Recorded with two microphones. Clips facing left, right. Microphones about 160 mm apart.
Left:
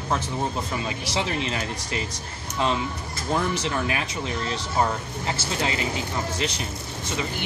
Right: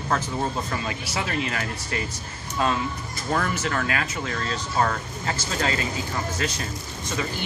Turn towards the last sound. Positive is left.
turn(degrees=20)  # may be behind; listen again after turning